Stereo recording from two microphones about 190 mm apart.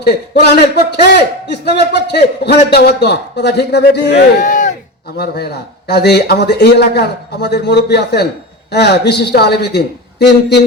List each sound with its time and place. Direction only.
0.0 s a man's voice: 55° left (ahead or behind)
4.4 s a sound: 40° left (ahead or behind)
5.1 s a man's voice: 55° left (ahead or behind)